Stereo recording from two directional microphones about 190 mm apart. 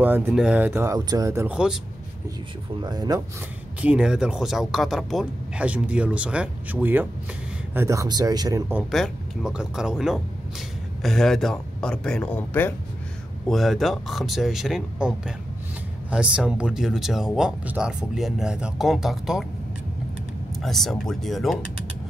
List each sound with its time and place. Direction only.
0.0 s speech: 10° right (ahead or behind)
1.5 s speech: 5° right (ahead or behind)
2.8 s speech: 20° right (ahead or behind)
3.8 s speech: 5° right (ahead or behind)
8.9 s speech: centre (ahead or behind)
20.6 s speech: centre (ahead or behind)